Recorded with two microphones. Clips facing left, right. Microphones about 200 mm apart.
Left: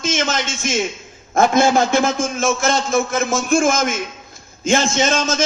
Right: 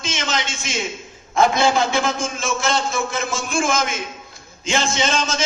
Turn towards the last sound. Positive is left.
turn(degrees=45)  # may be behind; listen again after turning